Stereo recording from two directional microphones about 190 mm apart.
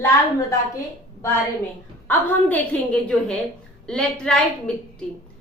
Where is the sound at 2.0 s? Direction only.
10° left (ahead or behind).